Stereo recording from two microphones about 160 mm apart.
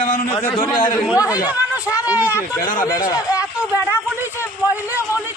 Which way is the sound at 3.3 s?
10° right (ahead or behind).